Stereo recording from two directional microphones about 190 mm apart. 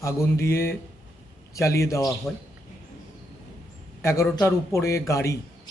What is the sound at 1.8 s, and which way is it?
Speech, 15° left (ahead or behind).